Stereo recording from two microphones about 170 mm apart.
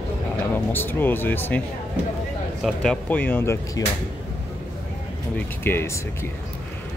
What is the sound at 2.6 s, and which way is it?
Speech, 5° left (ahead or behind).